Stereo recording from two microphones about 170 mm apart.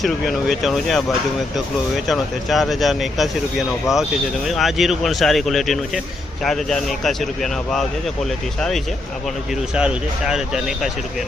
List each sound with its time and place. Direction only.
0.0 s speech: centre (ahead or behind)
9.7 s speech: 5° right (ahead or behind)